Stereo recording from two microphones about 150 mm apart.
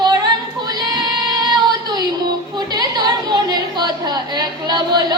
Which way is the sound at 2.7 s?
30° right (ahead or behind).